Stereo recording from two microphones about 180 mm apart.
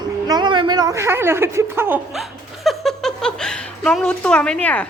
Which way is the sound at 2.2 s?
Centre (ahead or behind).